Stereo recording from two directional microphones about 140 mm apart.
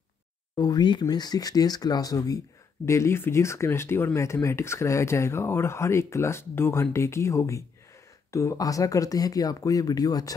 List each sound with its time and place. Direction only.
0.6 s speech: 30° left (ahead or behind)